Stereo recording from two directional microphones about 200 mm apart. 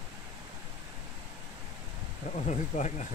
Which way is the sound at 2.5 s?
35° left (ahead or behind).